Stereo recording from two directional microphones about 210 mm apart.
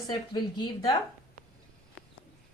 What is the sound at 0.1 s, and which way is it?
Speech, 20° left (ahead or behind).